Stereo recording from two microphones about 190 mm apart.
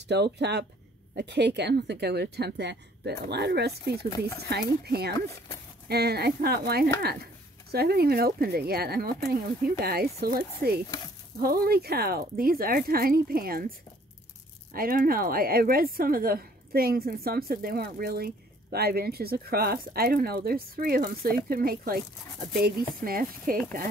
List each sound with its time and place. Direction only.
0.1 s a woman's voice: 65° right (ahead or behind)
14.7 s a woman's voice: 50° right (ahead or behind)